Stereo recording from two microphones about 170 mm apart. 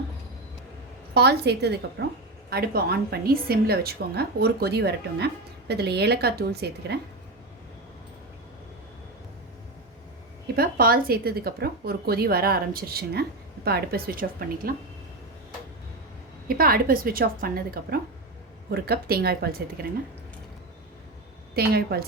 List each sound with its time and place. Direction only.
1.1 s a woman's voice: 75° right (ahead or behind)
2.5 s a woman's voice: 65° right (ahead or behind)
10.5 s a woman's voice: 60° right (ahead or behind)
16.5 s a woman's voice: 60° right (ahead or behind)
21.5 s a woman's voice: 65° right (ahead or behind)